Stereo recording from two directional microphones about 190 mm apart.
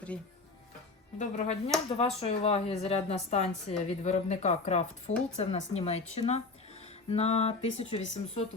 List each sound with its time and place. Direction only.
1.2 s speech: 35° left (ahead or behind)